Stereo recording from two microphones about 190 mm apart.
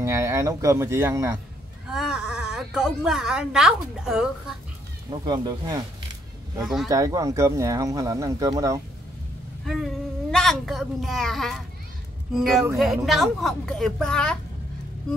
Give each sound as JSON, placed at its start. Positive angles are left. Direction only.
{"t": 0.0, "sound": "speech", "side_deg": -15}
{"t": 1.9, "sound": "a woman's voice", "side_deg": -5}
{"t": 5.1, "sound": "speech", "side_deg": -20}
{"t": 6.6, "sound": "a woman's voice", "side_deg": 0}
{"t": 6.9, "sound": "speech", "side_deg": -15}
{"t": 10.3, "sound": "a woman's voice", "side_deg": 0}